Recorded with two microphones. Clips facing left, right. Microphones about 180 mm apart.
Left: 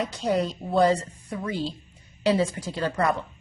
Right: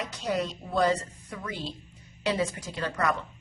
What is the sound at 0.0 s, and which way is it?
A woman's voice, 30° left (ahead or behind).